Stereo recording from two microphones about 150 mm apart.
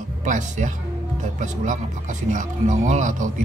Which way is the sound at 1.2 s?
55° right (ahead or behind).